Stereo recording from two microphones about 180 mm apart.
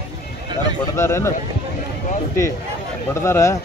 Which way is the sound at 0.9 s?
15° left (ahead or behind).